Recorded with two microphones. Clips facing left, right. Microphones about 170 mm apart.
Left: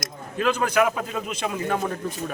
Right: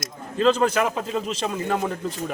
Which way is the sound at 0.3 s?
25° right (ahead or behind).